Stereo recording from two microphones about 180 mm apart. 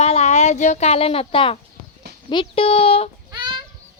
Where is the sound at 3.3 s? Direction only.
25° right (ahead or behind).